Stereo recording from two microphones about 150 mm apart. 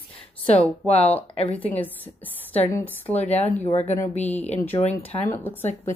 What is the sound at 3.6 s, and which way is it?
Speech, 45° left (ahead or behind).